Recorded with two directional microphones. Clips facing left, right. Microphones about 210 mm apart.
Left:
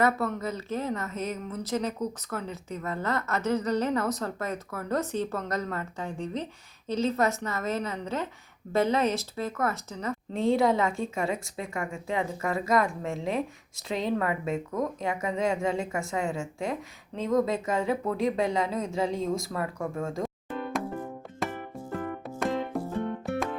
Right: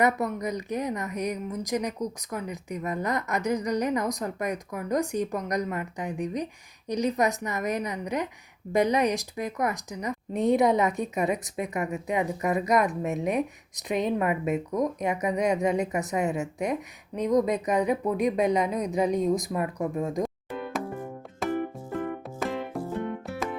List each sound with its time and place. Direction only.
0.0 s a woman's voice: 15° right (ahead or behind)
20.2 s music: centre (ahead or behind)